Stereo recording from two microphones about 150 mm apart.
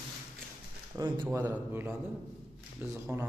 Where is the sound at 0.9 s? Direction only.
30° right (ahead or behind).